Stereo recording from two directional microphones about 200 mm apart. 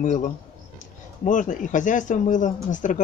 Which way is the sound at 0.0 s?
40° left (ahead or behind).